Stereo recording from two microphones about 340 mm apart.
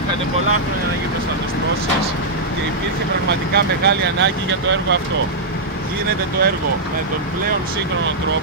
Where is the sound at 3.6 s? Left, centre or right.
Right.